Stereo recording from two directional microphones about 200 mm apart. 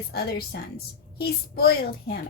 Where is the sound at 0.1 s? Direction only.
50° left (ahead or behind).